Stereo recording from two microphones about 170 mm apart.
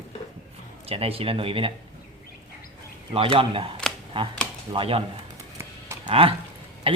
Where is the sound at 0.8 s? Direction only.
35° right (ahead or behind).